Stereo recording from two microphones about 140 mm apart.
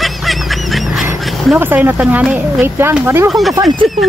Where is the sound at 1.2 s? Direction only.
Centre (ahead or behind).